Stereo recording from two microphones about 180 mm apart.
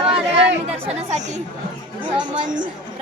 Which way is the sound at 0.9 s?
40° right (ahead or behind).